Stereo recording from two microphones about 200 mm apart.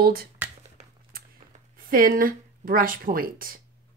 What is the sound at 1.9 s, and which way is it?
Speech, 45° right (ahead or behind).